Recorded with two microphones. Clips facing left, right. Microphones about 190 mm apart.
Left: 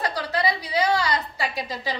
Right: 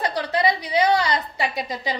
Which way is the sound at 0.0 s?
20° right (ahead or behind).